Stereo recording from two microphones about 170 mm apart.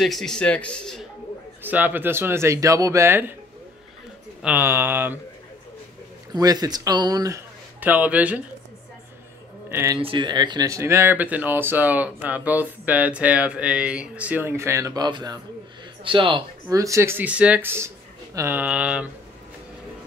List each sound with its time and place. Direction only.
0.0 s speech: centre (ahead or behind)
1.6 s speech: 10° right (ahead or behind)
4.4 s speech: 10° right (ahead or behind)
6.3 s speech: 20° right (ahead or behind)
7.8 s speech: 10° right (ahead or behind)
9.7 s speech: 15° right (ahead or behind)
9.9 s speech: 30° right (ahead or behind)
16.6 s speech: 20° right (ahead or behind)